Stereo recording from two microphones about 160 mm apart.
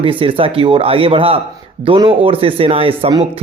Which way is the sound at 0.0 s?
35° right (ahead or behind).